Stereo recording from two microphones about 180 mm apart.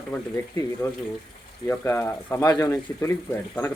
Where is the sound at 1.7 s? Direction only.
15° left (ahead or behind).